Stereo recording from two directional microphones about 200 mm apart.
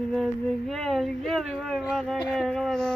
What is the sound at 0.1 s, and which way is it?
Speech, centre (ahead or behind).